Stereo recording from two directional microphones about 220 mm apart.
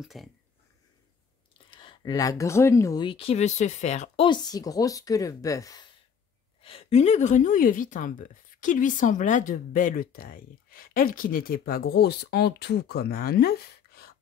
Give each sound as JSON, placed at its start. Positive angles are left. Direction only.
{"t": 0.0, "sound": "speech", "side_deg": 0}
{"t": 1.7, "sound": "a woman's voice", "side_deg": 20}